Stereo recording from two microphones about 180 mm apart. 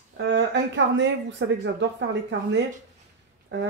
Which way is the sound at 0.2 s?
85° right.